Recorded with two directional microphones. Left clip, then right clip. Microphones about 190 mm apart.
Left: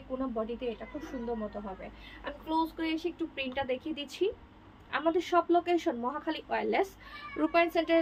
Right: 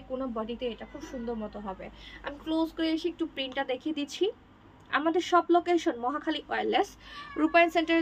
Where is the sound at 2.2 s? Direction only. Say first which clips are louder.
Right 1 dB; 20° right (ahead or behind).